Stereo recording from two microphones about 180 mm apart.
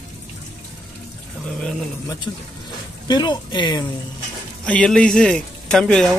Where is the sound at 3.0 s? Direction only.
25° left (ahead or behind).